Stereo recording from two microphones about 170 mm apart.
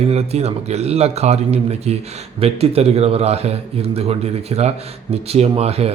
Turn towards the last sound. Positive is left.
turn(degrees=-35)  # may be behind; listen again after turning